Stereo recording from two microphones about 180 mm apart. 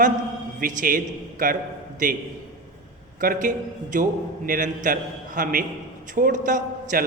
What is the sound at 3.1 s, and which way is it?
A man's voice, 50° right (ahead or behind).